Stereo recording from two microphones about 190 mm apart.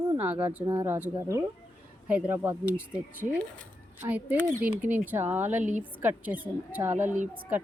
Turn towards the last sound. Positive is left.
turn(degrees=-40)  # may be behind; listen again after turning